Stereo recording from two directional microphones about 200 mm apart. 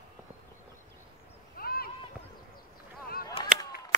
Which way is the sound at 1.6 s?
50° left (ahead or behind).